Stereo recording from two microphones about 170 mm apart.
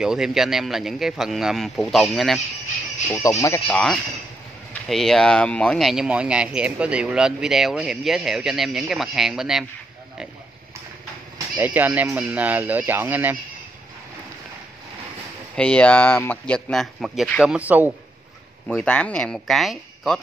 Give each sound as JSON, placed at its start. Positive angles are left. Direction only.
{"t": 0.0, "sound": "speech", "side_deg": -5}
{"t": 3.1, "sound": "speech", "side_deg": 20}
{"t": 3.6, "sound": "speech", "side_deg": 5}
{"t": 11.5, "sound": "speech", "side_deg": -10}
{"t": 15.5, "sound": "speech", "side_deg": 5}
{"t": 18.8, "sound": "speech", "side_deg": 5}